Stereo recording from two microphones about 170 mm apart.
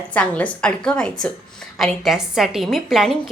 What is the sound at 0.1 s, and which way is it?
A woman's voice, 5° left (ahead or behind).